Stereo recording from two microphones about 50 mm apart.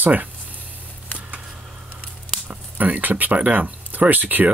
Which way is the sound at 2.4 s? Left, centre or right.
Right.